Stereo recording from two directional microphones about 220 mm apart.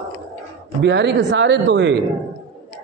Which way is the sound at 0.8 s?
50° right (ahead or behind).